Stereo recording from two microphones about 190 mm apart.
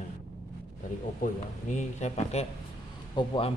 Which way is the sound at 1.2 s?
40° left (ahead or behind).